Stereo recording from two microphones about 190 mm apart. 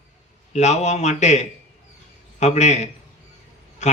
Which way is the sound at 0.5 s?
40° left (ahead or behind).